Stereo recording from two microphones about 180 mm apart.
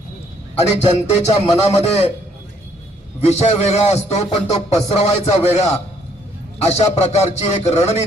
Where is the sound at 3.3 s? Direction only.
35° left (ahead or behind).